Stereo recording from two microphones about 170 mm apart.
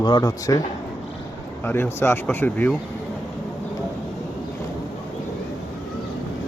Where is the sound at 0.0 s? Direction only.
25° left (ahead or behind).